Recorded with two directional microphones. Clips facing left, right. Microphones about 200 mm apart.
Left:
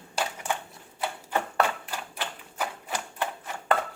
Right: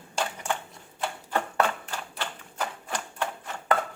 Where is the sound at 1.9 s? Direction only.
10° left (ahead or behind).